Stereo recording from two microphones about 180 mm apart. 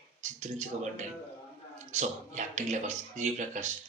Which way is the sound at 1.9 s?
40° right (ahead or behind).